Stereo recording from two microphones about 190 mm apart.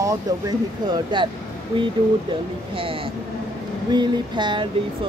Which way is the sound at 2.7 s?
30° right (ahead or behind).